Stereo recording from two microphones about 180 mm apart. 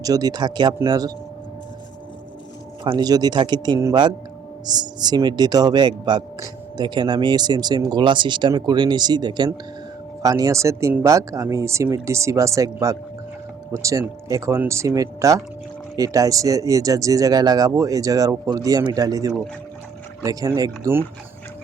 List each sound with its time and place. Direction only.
0.0 s speech: 20° right (ahead or behind)
2.8 s speech: 20° right (ahead or behind)